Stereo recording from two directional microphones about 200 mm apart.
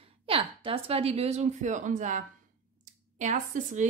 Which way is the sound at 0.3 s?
30° right (ahead or behind).